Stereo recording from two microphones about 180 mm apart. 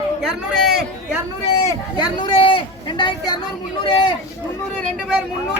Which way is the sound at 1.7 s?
25° left (ahead or behind).